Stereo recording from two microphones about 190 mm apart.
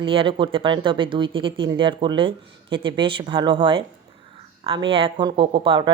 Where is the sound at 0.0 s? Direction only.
25° right (ahead or behind).